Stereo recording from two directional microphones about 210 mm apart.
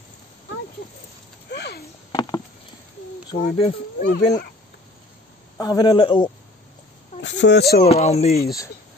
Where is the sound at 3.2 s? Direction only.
25° left (ahead or behind).